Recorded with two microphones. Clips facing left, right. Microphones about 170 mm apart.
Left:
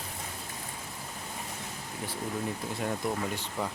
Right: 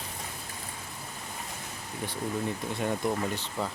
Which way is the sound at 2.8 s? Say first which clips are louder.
Right 3 dB; centre (ahead or behind).